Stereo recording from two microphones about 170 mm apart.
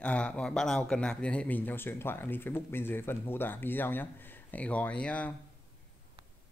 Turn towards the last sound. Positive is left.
turn(degrees=5)  # may be behind; listen again after turning